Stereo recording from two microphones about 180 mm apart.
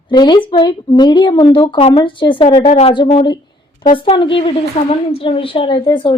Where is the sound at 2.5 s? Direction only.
40° left (ahead or behind).